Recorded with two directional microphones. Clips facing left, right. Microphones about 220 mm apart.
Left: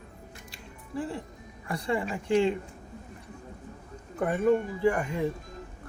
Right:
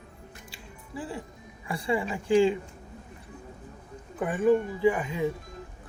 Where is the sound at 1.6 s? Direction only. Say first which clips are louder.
Right 1 dB; 5° right (ahead or behind).